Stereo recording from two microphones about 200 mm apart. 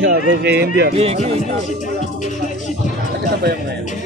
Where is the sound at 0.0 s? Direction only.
60° right (ahead or behind).